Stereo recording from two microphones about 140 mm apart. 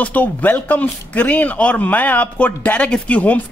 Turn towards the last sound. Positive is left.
turn(degrees=10)  # may be behind; listen again after turning